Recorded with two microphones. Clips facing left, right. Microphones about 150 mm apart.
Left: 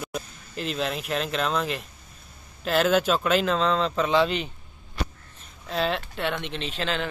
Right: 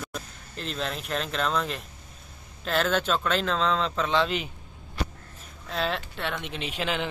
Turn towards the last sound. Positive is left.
turn(degrees=-15)  # may be behind; listen again after turning